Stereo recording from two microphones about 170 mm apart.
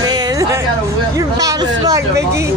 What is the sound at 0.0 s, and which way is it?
Music, 20° right (ahead or behind).